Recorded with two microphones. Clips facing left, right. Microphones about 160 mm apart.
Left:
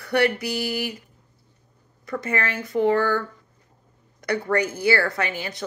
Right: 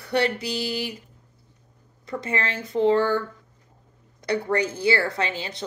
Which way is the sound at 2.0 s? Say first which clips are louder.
Left 2 dB; 25° right (ahead or behind).